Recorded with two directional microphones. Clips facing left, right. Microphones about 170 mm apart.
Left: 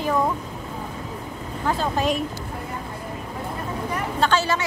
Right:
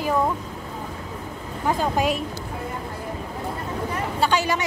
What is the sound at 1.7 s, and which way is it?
Speech, 10° right (ahead or behind).